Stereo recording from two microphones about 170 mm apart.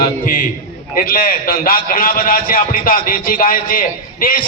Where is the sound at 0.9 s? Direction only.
55° left (ahead or behind).